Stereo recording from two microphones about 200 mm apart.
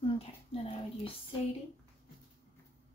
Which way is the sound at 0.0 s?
30° left (ahead or behind).